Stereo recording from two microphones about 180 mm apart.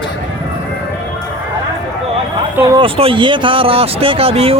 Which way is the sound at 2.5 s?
20° right (ahead or behind).